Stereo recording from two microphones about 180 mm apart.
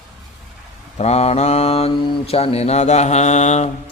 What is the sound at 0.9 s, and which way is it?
Mantra, 35° left (ahead or behind).